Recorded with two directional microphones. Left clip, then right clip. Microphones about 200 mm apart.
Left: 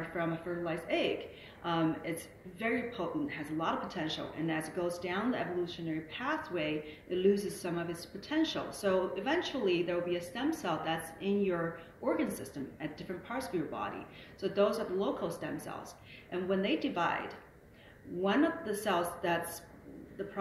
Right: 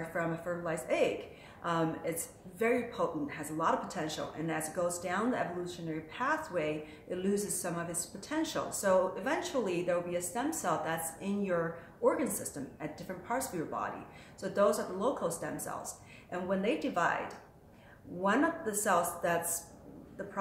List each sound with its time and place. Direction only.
0.7 s a woman's voice: 15° right (ahead or behind)
18.2 s speech: 15° right (ahead or behind)